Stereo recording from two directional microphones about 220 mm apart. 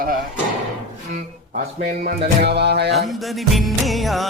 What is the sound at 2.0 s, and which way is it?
Music, 50° right (ahead or behind).